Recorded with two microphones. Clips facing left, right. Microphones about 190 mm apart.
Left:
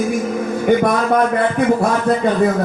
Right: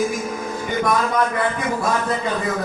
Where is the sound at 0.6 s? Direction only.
55° left (ahead or behind).